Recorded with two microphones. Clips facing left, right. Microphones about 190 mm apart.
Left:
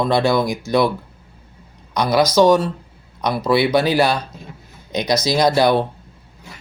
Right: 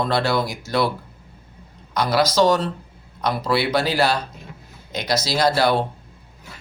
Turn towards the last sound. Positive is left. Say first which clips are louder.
# left 3 dB
turn(degrees=15)  # may be behind; listen again after turning